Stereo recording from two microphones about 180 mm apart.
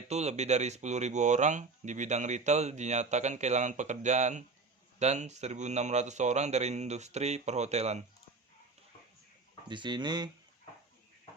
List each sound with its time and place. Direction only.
0.1 s speech: 35° right (ahead or behind)
9.6 s speech: 25° right (ahead or behind)